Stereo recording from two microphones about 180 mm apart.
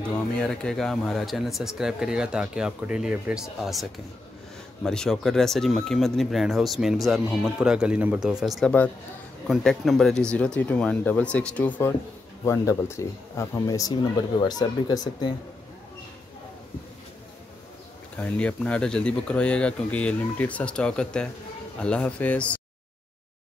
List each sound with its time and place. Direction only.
0.1 s speech: 5° left (ahead or behind); by 15.3 s 20° left (ahead or behind)
18.1 s speech: 5° left (ahead or behind)